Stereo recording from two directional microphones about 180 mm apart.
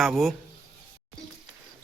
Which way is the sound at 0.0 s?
Centre (ahead or behind).